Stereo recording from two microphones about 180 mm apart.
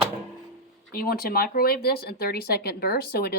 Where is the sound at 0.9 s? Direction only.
55° left (ahead or behind).